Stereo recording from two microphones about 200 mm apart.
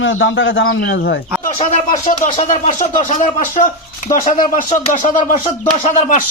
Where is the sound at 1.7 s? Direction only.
40° left (ahead or behind).